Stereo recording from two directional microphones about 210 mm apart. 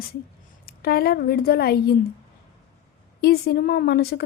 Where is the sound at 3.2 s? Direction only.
50° left (ahead or behind).